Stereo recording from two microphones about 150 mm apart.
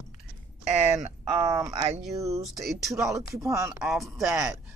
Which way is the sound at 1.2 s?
25° right (ahead or behind).